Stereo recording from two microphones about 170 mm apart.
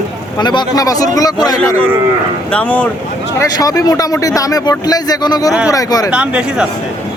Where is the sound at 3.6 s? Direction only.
20° left (ahead or behind).